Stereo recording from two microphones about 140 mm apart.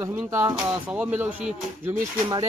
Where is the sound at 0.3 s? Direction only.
20° right (ahead or behind).